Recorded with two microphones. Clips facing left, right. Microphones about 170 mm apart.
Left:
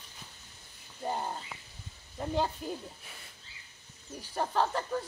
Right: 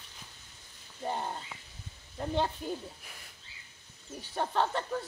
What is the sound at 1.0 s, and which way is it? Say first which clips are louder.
Speech: even; 5° left (ahead or behind).